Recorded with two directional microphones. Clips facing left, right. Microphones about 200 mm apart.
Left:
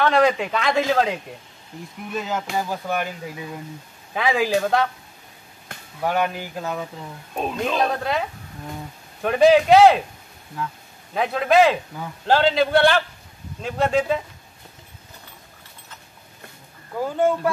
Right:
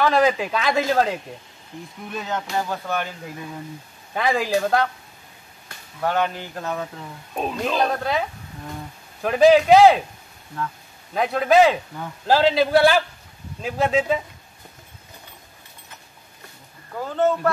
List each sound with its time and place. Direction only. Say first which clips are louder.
0.0 s a man's voice: even; centre (ahead or behind)
2.5 s speech: even; 10° left (ahead or behind)
4.1 s a man's voice: left 1 dB; centre (ahead or behind)
6.0 s a man's voice: even; 10° left (ahead or behind)
11.1 s a man's voice: right 1 dB; centre (ahead or behind)
17.0 s speech: even; 10° left (ahead or behind)